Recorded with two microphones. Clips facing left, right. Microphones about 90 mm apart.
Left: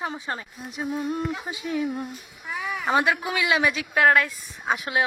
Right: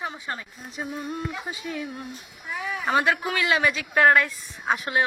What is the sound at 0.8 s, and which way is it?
Speech, centre (ahead or behind).